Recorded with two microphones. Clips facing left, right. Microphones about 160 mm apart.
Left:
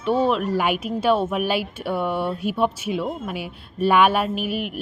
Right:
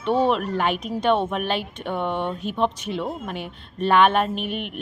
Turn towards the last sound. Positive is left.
turn(degrees=5)  # may be behind; listen again after turning